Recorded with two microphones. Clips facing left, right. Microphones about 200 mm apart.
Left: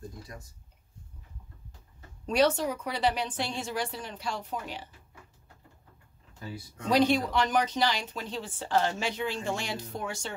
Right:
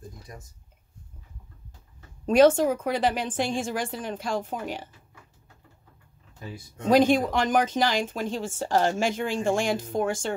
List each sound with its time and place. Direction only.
2.2 s speech: 50° right (ahead or behind)
6.8 s speech: 50° right (ahead or behind)